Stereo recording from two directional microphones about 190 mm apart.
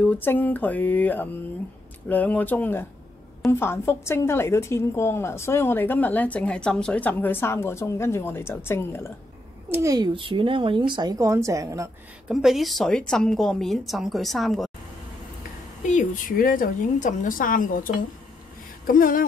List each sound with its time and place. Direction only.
0.0 s a woman's voice: 10° left (ahead or behind)
9.7 s speech: 15° right (ahead or behind)
12.3 s a woman's voice: 5° right (ahead or behind)
15.8 s a woman's voice: 40° left (ahead or behind)